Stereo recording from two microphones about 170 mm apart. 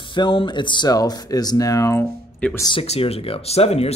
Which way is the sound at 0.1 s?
30° left (ahead or behind).